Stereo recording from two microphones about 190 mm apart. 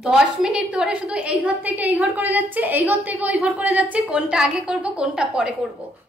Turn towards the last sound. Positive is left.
turn(degrees=-5)  # may be behind; listen again after turning